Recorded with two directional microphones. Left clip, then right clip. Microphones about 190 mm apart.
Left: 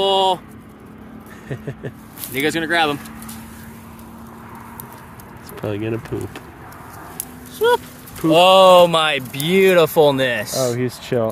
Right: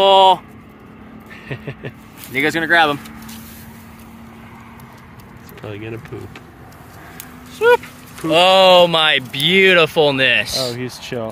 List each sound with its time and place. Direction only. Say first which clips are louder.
0.0 s speech: right 6 dB; centre (ahead or behind)
1.5 s a sound: even; 20° left (ahead or behind)
2.3 s speech: right 4 dB; centre (ahead or behind)
5.6 s speech: left 6 dB; 55° left (ahead or behind)
7.5 s speech: right 3 dB; 20° left (ahead or behind)
8.2 s speech: left 1 dB; 60° left (ahead or behind)
8.5 s speech: right 1 dB; 15° left (ahead or behind)
10.6 s speech: left 3 dB; 40° left (ahead or behind)